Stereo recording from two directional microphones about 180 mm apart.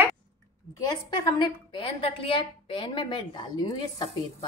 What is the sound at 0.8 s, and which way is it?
A woman's voice, 25° left (ahead or behind).